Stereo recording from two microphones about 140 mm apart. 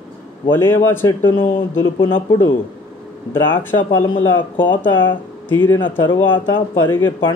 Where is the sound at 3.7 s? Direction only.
20° left (ahead or behind).